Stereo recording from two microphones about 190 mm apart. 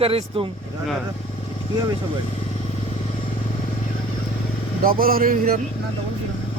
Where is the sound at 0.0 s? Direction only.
30° right (ahead or behind).